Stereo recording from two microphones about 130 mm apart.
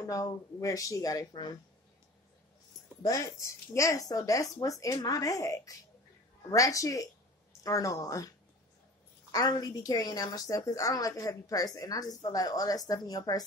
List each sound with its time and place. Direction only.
0.1 s a woman's voice: 25° left (ahead or behind)
3.0 s a woman's voice: 25° left (ahead or behind)
9.3 s a woman's voice: 30° left (ahead or behind)